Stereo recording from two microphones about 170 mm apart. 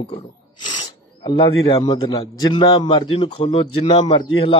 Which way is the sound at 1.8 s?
25° left (ahead or behind).